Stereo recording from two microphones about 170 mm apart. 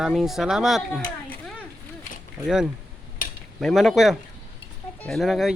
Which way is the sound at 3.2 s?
50° left (ahead or behind).